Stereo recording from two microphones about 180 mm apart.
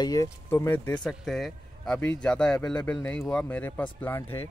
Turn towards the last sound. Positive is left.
turn(degrees=10)  # may be behind; listen again after turning